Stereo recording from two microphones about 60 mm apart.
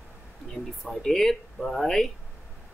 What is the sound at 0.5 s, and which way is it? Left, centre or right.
Speech, centre.